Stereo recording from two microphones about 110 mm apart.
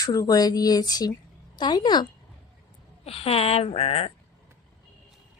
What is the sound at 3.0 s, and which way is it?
Speech, 65° left (ahead or behind).